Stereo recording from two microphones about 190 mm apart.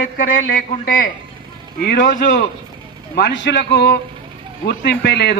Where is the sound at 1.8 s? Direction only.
55° left (ahead or behind).